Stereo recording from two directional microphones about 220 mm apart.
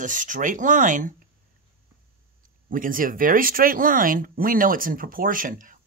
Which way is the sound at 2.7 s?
40° right (ahead or behind).